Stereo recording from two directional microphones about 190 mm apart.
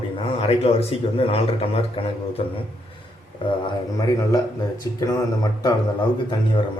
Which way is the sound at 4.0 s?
20° left (ahead or behind).